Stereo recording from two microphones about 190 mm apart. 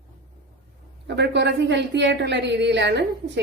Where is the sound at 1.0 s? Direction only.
65° right (ahead or behind).